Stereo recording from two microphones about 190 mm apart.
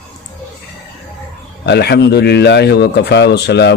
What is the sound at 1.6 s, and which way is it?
A man's voice, 60° left (ahead or behind).